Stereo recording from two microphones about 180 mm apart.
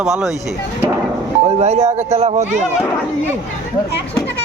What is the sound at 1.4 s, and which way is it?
Speech, 35° right (ahead or behind).